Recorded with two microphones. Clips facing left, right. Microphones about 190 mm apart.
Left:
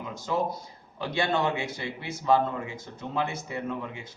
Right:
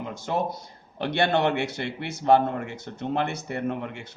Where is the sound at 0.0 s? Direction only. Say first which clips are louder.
Right 1 dB; 65° right (ahead or behind).